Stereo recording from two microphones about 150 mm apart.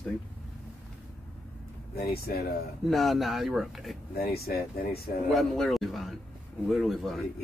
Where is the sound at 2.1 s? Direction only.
90° left.